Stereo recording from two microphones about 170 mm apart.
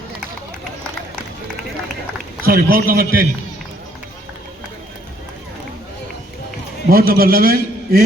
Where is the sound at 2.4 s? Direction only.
60° right (ahead or behind).